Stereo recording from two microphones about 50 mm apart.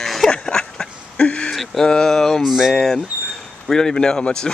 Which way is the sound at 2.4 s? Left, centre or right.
Centre.